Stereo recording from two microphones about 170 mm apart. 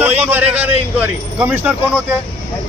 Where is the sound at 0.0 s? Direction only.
10° right (ahead or behind).